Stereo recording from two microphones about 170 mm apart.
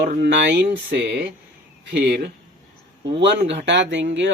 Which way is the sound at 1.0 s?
75° right (ahead or behind).